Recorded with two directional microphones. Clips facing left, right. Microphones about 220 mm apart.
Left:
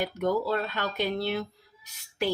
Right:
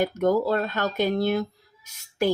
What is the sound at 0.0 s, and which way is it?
Speech, 45° right (ahead or behind).